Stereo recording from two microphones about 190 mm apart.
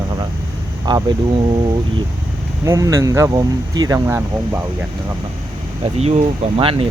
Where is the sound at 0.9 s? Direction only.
20° right (ahead or behind).